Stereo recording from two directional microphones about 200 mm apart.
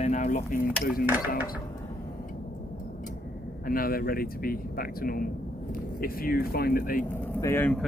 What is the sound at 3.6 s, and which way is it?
Speech, 45° left (ahead or behind).